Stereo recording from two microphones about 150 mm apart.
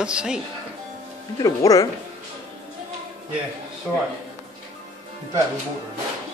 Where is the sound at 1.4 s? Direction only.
20° left (ahead or behind).